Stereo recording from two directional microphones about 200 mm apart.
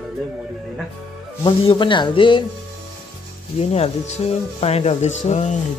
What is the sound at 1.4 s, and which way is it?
Speech, 25° left (ahead or behind).